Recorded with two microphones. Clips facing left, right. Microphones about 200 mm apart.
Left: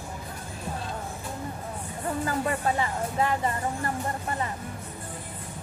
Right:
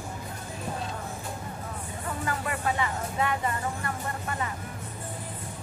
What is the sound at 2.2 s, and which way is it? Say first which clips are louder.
Speech: left 2 dB; 35° left (ahead or behind).